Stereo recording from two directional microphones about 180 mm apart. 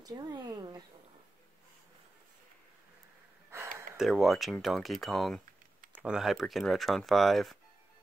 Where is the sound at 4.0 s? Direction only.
Centre (ahead or behind).